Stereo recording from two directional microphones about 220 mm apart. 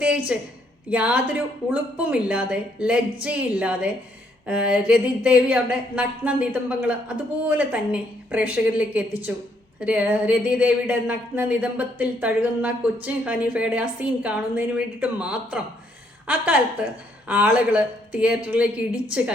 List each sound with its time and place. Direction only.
0.0 s a woman's voice: 5° right (ahead or behind)